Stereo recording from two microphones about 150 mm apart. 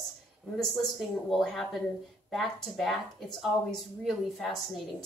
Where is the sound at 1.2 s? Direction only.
Centre (ahead or behind).